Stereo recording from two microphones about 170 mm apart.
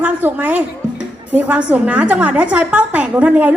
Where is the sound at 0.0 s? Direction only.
10° right (ahead or behind).